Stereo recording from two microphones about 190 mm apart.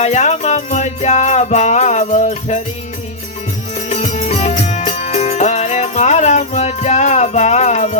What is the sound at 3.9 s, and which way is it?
Music, 40° left (ahead or behind).